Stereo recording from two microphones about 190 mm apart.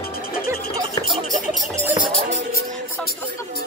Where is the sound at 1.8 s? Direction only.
20° right (ahead or behind).